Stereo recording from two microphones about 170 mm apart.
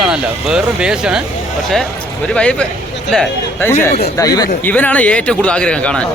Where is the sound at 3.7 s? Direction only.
15° left (ahead or behind).